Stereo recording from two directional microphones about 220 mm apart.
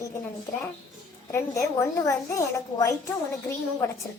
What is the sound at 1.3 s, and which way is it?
A woman's voice, 10° left (ahead or behind).